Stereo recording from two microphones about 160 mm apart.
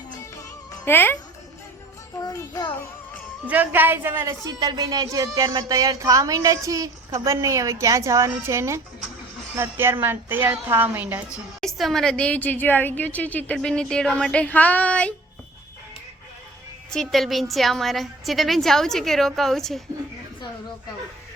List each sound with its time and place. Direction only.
0.7 s music: 15° left (ahead or behind)
2.2 s music: 20° left (ahead or behind)
3.4 s a woman's voice: 10° right (ahead or behind)
11.6 s a woman's voice: centre (ahead or behind)
16.9 s a woman's voice: centre (ahead or behind)